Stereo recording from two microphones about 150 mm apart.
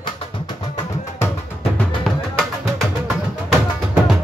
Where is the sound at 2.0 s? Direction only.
Centre (ahead or behind).